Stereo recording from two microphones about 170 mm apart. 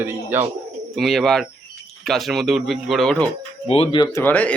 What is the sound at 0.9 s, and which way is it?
Speech, centre (ahead or behind).